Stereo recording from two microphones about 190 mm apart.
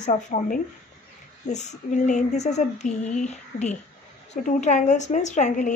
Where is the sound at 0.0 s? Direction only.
40° left (ahead or behind).